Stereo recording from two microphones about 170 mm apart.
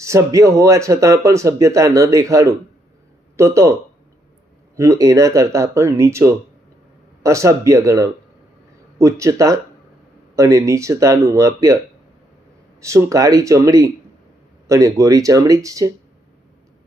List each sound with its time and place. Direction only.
0.0 s speech: 20° right (ahead or behind)
4.8 s speech: 20° right (ahead or behind)
12.8 s speech: 15° right (ahead or behind)